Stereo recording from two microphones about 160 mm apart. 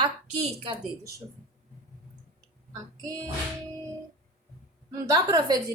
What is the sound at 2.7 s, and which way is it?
Child singing, 20° right (ahead or behind).